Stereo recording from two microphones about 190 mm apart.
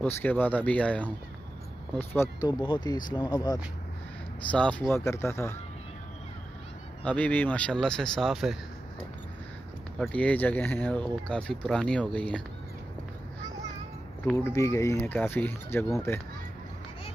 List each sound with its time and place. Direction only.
0.0 s speech: 10° left (ahead or behind)
2.6 s speech: 25° left (ahead or behind)
4.5 s speech: 5° left (ahead or behind)
7.1 s speech: 5° left (ahead or behind)
9.9 s speech: 5° left (ahead or behind)
14.2 s speech: 10° left (ahead or behind)